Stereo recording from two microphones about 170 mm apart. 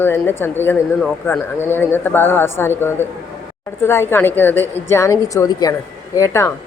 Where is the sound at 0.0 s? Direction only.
15° left (ahead or behind).